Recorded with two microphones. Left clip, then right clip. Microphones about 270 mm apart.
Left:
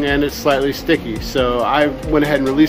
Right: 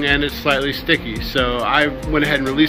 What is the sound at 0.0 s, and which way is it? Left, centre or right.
Speech, centre.